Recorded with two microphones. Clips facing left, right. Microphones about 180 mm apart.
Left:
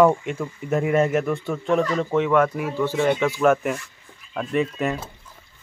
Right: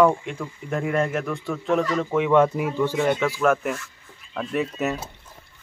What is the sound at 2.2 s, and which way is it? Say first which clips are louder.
Speech: right 1 dB; 20° right (ahead or behind).